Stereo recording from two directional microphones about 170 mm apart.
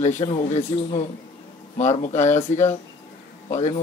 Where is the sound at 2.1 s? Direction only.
45° left (ahead or behind).